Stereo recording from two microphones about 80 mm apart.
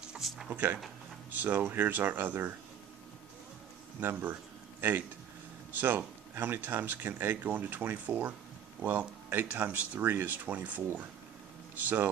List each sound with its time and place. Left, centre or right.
0.0 s music: centre
0.5 s speech: right
4.0 s speech: right
5.7 s speech: right